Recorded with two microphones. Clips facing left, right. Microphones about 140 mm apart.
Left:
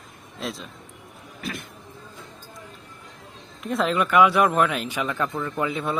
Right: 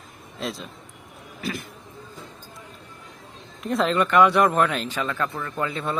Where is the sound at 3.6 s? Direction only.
Centre (ahead or behind).